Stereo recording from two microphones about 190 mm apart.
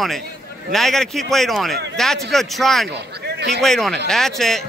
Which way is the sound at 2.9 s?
60° right (ahead or behind).